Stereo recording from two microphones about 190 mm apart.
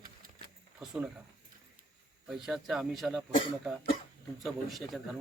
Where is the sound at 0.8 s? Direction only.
5° right (ahead or behind).